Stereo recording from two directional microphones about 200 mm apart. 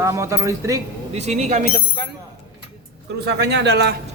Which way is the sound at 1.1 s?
35° right (ahead or behind).